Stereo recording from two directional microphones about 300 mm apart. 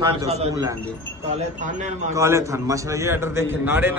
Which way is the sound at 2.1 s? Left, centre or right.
Centre.